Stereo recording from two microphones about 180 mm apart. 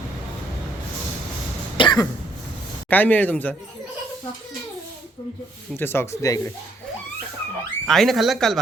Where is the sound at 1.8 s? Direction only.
25° left (ahead or behind).